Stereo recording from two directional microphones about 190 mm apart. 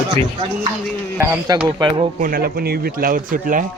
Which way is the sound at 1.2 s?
15° right (ahead or behind).